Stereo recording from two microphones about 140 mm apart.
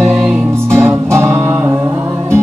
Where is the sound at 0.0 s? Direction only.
15° right (ahead or behind).